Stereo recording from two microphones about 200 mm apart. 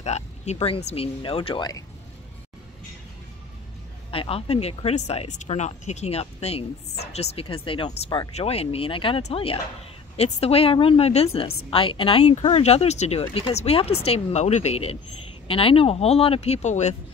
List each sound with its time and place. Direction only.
0.0 s speech: 35° left (ahead or behind)
4.1 s speech: 30° left (ahead or behind)